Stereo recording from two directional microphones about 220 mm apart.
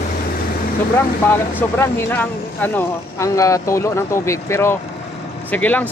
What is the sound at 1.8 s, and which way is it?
Speech, 10° left (ahead or behind).